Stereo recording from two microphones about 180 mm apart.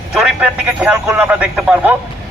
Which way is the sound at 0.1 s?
5° right (ahead or behind).